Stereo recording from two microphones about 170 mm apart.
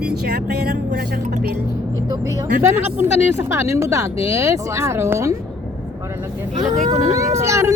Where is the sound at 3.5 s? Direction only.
15° right (ahead or behind).